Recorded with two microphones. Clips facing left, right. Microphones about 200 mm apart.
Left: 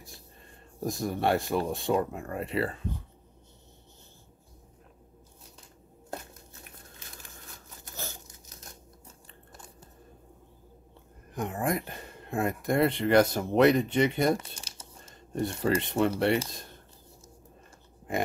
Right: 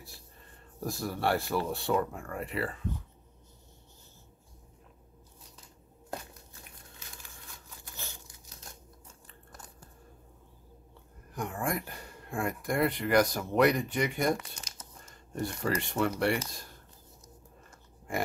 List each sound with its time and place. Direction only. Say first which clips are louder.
0.7 s speech: left 4 dB; 20° left (ahead or behind)
7.7 s a sound: left 6 dB; 40° left (ahead or behind)
11.3 s speech: left 3 dB; 20° left (ahead or behind)